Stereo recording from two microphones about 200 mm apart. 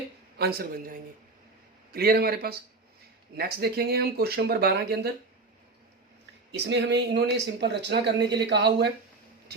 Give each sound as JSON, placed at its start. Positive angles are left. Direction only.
{"t": 0.3, "sound": "speech", "side_deg": -50}
{"t": 6.5, "sound": "speech", "side_deg": -60}